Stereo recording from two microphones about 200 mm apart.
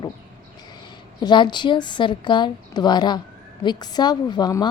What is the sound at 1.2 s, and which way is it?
A woman's voice, 20° left (ahead or behind).